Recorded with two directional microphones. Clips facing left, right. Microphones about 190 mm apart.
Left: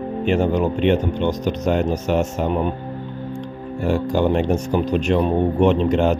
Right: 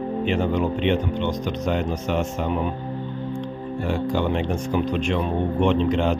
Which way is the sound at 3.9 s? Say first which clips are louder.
Left 5 dB; 45° left (ahead or behind).